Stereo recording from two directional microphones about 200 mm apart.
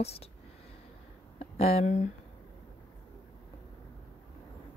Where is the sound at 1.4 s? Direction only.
30° left (ahead or behind).